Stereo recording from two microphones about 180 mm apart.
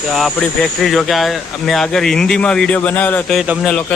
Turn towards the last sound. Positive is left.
turn(degrees=-5)  # may be behind; listen again after turning